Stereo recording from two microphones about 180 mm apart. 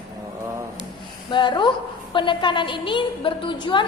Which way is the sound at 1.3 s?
25° left (ahead or behind).